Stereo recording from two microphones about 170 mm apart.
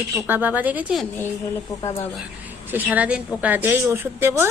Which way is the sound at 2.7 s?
10° right (ahead or behind).